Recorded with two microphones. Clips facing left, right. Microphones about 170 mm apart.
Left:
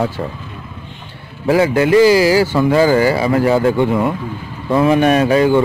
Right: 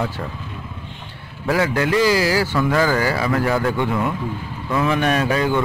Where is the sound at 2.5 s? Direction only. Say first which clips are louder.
Left 6 dB; 25° left (ahead or behind).